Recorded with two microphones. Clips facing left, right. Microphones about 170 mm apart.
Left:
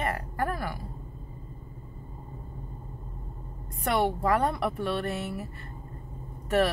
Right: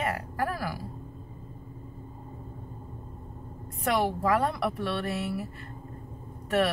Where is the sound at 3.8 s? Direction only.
Centre (ahead or behind).